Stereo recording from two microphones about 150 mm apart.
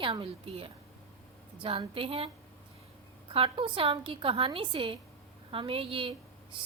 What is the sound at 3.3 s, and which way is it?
A woman's voice, 35° right (ahead or behind).